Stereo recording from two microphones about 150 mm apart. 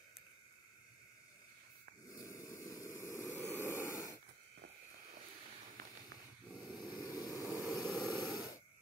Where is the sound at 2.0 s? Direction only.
25° left (ahead or behind).